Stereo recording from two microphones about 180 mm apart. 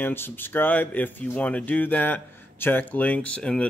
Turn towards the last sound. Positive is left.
turn(degrees=5)  # may be behind; listen again after turning